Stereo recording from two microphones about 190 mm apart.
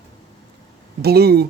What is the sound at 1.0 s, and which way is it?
Speech, 55° right (ahead or behind).